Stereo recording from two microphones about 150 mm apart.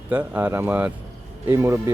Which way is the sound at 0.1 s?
10° right (ahead or behind).